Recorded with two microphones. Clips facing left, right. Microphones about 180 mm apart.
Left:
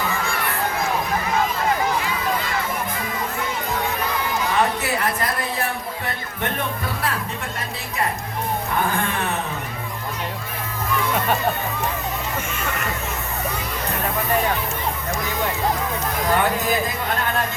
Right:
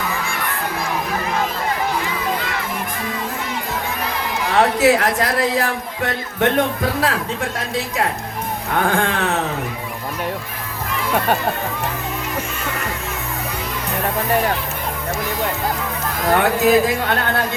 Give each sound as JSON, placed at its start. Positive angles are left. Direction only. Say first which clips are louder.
{"t": 4.5, "sound": "a man's voice", "louder": "right 10 dB", "side_deg": -80}
{"t": 8.7, "sound": "music", "louder": "right 7 dB", "side_deg": -90}
{"t": 16.4, "sound": "speech", "louder": "right 6 dB", "side_deg": -75}